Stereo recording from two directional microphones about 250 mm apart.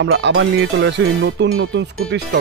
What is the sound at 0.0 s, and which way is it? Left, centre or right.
Speech, right.